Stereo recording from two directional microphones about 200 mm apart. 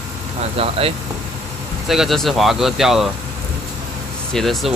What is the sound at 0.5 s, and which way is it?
Speech, 30° right (ahead or behind).